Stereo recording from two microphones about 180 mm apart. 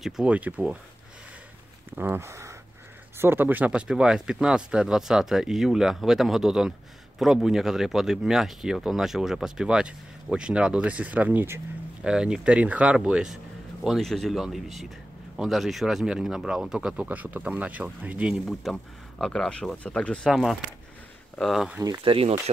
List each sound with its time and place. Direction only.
0.0 s speech: 5° right (ahead or behind)
2.0 s speech: 10° right (ahead or behind)
21.7 s speech: 20° right (ahead or behind)
22.0 s speech: 30° right (ahead or behind)